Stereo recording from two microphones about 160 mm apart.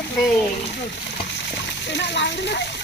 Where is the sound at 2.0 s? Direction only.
90° left.